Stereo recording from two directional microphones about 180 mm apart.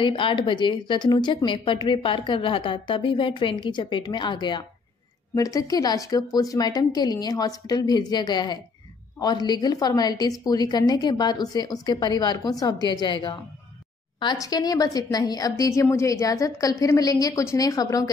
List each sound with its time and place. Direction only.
0.0 s speech: 30° left (ahead or behind)